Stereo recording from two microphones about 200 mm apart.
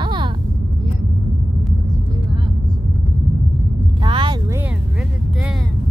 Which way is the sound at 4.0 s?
25° right (ahead or behind).